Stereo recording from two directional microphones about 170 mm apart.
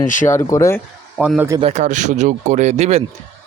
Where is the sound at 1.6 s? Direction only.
40° right (ahead or behind).